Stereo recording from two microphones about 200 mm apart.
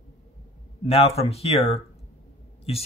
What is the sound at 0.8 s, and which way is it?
Speech, 30° left (ahead or behind).